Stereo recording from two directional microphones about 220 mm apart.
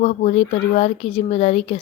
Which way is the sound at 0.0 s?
30° left (ahead or behind).